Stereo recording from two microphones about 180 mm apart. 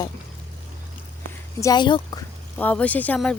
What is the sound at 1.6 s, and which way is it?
Speech, 20° left (ahead or behind).